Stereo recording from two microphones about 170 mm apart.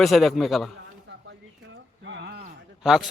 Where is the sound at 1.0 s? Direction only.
90° right.